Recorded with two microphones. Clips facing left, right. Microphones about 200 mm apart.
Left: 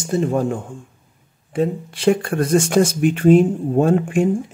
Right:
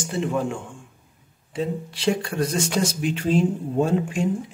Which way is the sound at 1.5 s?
55° left (ahead or behind).